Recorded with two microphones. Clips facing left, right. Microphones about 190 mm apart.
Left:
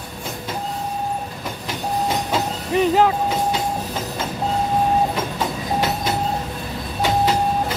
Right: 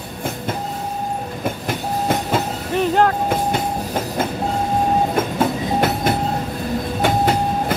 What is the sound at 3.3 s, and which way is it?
Train, 55° right (ahead or behind).